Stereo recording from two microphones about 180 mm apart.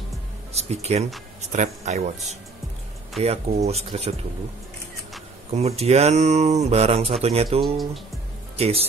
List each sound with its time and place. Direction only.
0.5 s speech: 35° right (ahead or behind)
5.5 s speech: 35° right (ahead or behind)
8.5 s speech: 35° right (ahead or behind)